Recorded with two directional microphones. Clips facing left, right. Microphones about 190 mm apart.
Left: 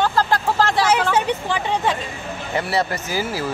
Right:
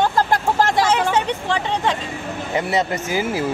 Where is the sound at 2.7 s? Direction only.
20° right (ahead or behind).